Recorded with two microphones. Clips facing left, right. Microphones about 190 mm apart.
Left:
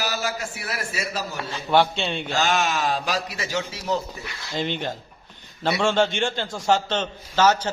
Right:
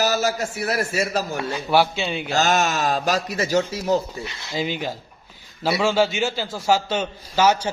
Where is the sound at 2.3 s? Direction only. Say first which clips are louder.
Right 3 dB; 45° right (ahead or behind).